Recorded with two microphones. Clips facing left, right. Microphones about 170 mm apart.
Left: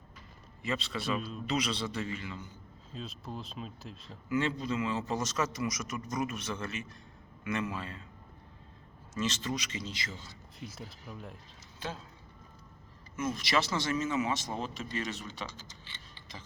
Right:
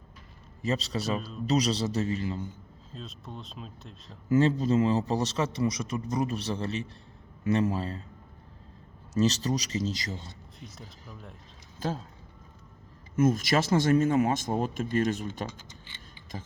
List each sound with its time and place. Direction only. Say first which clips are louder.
0.6 s a man's voice: right 5 dB; 40° right (ahead or behind)
2.9 s speech: left 1 dB; centre (ahead or behind)
4.3 s a man's voice: right 8 dB; 40° right (ahead or behind)
9.1 s a man's voice: right 8 dB; 40° right (ahead or behind)
10.6 s speech: left 4 dB; 5° left (ahead or behind)
11.8 s a man's voice: right 8 dB; 40° right (ahead or behind)
13.1 s speech: right 7 dB; 45° right (ahead or behind)